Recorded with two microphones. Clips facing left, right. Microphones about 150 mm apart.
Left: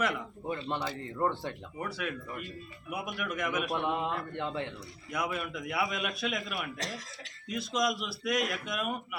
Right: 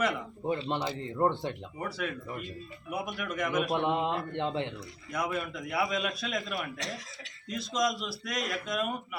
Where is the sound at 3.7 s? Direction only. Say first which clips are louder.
Right 3 dB; 20° right (ahead or behind).